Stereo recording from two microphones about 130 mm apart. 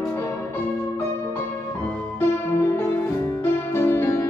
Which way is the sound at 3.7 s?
20° left (ahead or behind).